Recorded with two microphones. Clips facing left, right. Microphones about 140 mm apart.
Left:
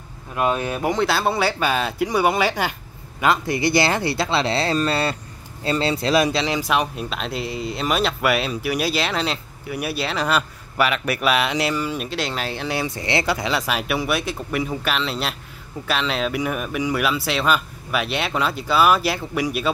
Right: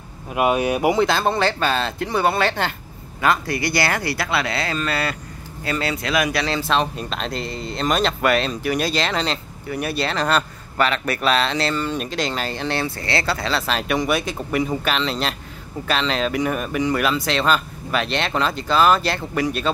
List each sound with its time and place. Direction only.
0.3 s speech: 15° right (ahead or behind)
1.0 s speech: 5° left (ahead or behind); by 6.4 s 30° left (ahead or behind)
6.4 s speech: 15° left (ahead or behind)
12.8 s speech: 20° left (ahead or behind)